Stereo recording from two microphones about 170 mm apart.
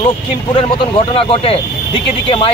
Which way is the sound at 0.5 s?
30° left (ahead or behind).